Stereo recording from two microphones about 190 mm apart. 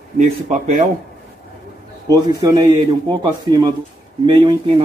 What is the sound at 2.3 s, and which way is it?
Speech, 20° right (ahead or behind).